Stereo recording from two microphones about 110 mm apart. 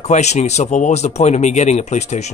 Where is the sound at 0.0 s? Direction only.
90° left.